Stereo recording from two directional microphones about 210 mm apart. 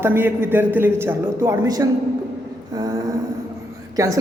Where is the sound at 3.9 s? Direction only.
15° right (ahead or behind).